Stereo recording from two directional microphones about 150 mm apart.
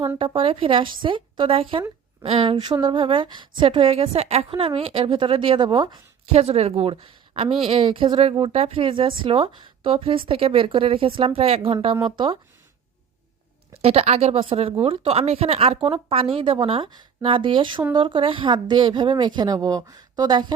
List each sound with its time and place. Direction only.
0.3 s a woman's voice: 35° right (ahead or behind)
6.3 s a woman's voice: 45° right (ahead or behind)
13.8 s a woman's voice: 45° right (ahead or behind)